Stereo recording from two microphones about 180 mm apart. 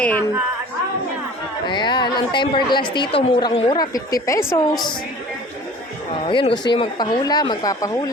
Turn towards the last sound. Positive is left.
turn(degrees=20)  # may be behind; listen again after turning